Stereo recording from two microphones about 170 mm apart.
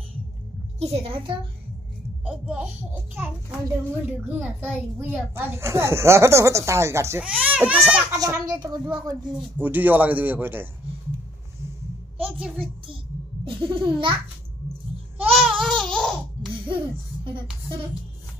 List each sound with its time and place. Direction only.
0.7 s a child's voice: 35° right (ahead or behind)
2.2 s a child's voice: 5° right (ahead or behind)
8.1 s a child's voice: 20° right (ahead or behind)
9.4 s a child's voice: 10° right (ahead or behind)
12.2 s a sound: 5° right (ahead or behind)
13.5 s a child's voice: 30° right (ahead or behind)
15.2 s babbling: centre (ahead or behind)